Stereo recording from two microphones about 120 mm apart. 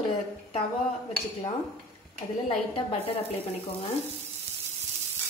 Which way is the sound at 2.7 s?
55° left (ahead or behind).